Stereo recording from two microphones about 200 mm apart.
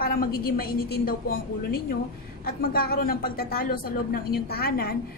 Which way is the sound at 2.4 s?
50° left (ahead or behind).